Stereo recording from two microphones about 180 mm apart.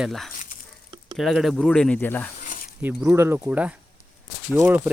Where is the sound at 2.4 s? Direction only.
50° left (ahead or behind).